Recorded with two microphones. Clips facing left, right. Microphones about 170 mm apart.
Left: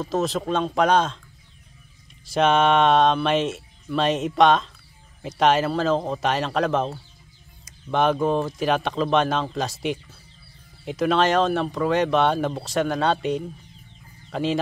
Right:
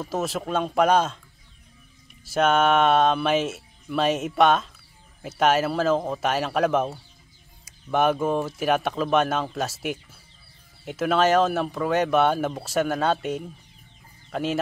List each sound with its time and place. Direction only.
0.0 s speech: 5° right (ahead or behind)
2.2 s speech: 5° right (ahead or behind)